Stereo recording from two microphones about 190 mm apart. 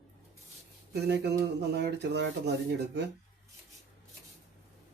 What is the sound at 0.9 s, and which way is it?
Speech, 60° right (ahead or behind).